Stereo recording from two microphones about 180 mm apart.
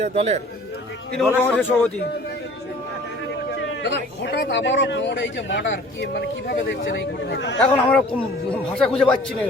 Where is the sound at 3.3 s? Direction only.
70° left (ahead or behind).